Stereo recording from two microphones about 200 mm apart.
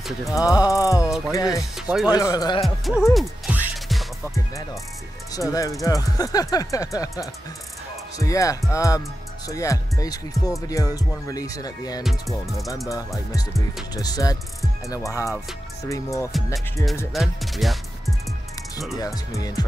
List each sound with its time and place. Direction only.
0.3 s speech: 20° left (ahead or behind)
1.6 s speech: centre (ahead or behind)
2.0 s speech: 20° left (ahead or behind)
2.6 s music: centre (ahead or behind)
5.3 s speech: 15° left (ahead or behind)
12.0 s music: centre (ahead or behind)
13.9 s speech: 20° left (ahead or behind)
17.1 s speech: centre (ahead or behind)
18.9 s speech: 15° left (ahead or behind)